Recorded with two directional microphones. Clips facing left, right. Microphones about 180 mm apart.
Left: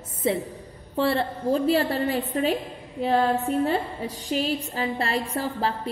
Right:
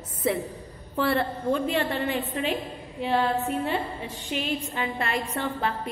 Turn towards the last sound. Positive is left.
turn(degrees=35)  # may be behind; listen again after turning